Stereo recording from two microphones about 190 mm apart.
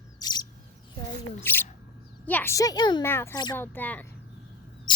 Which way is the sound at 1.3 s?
10° left (ahead or behind).